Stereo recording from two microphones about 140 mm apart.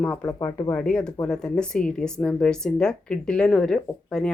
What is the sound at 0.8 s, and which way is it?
Speech, 5° left (ahead or behind).